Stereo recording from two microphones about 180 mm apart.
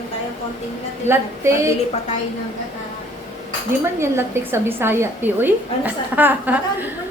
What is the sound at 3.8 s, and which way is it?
A woman's voice, 15° right (ahead or behind).